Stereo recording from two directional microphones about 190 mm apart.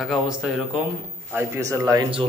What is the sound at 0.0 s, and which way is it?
A man's voice, 5° right (ahead or behind).